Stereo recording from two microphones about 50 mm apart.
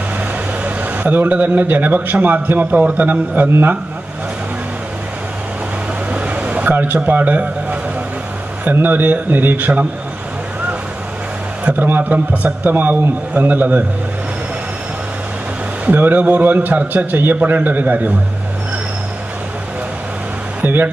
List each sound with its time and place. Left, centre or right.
0.7 s a man's voice: right
6.1 s a sound: right
6.7 s a man's voice: right
8.7 s a man's voice: right
11.6 s a man's voice: right
15.8 s a man's voice: right
20.6 s a man's voice: right